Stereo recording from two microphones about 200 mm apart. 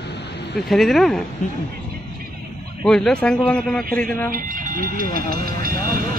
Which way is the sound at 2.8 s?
5° left (ahead or behind).